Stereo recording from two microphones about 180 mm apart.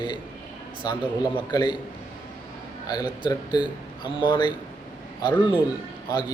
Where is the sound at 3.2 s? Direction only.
25° left (ahead or behind).